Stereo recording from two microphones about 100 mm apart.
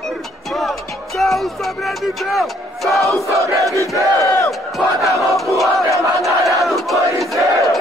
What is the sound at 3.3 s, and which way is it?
Crowd, 30° right (ahead or behind).